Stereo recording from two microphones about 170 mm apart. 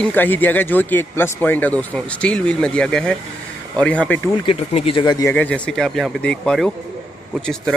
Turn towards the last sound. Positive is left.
turn(degrees=5)  # may be behind; listen again after turning